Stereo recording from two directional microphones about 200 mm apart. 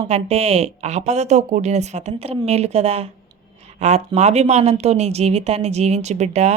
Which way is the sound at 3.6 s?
35° right (ahead or behind).